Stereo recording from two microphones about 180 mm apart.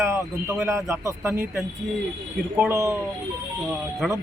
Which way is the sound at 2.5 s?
15° right (ahead or behind).